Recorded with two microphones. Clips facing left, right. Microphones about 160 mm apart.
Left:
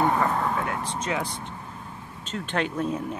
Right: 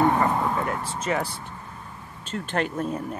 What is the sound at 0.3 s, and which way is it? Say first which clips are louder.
Vehicle: right 1 dB; 5° right (ahead or behind).